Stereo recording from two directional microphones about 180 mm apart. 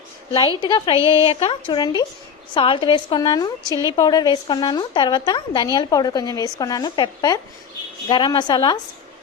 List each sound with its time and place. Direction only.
0.6 s a woman's voice: 25° left (ahead or behind)